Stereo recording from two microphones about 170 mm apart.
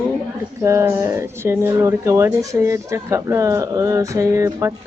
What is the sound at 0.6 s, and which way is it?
Speech, 15° right (ahead or behind).